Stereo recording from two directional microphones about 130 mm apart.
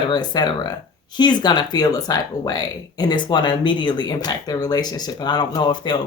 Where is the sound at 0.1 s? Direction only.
35° left (ahead or behind).